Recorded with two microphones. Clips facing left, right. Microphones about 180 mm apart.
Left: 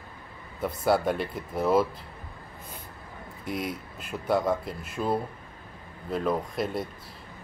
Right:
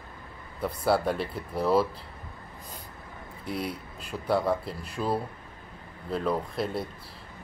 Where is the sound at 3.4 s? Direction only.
30° right (ahead or behind).